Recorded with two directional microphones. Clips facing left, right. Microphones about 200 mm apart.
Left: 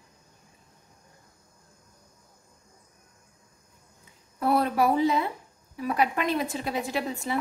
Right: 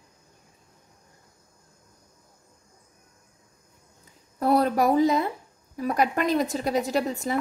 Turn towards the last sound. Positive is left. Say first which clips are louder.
# right 4 dB
turn(degrees=-40)  # may be behind; listen again after turning